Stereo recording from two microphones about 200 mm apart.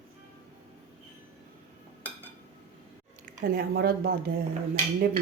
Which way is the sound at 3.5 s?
50° right (ahead or behind).